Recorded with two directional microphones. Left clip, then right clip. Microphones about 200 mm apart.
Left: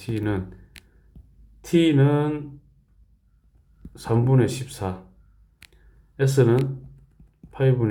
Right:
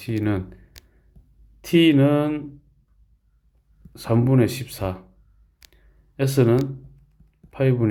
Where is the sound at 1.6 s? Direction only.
25° right (ahead or behind).